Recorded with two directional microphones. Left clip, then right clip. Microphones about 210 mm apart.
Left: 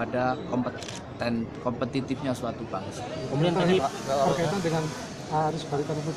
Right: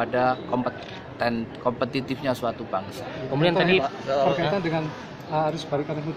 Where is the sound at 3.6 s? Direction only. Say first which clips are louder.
Right 3 dB; 50° right (ahead or behind).